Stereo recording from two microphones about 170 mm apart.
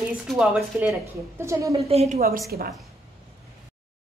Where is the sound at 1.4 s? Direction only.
15° right (ahead or behind).